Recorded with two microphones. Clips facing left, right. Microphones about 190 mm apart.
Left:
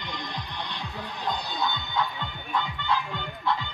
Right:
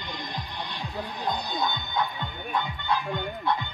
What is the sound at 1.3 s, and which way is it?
Speech, 15° right (ahead or behind).